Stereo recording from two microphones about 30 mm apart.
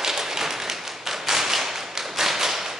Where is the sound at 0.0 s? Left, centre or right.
Centre.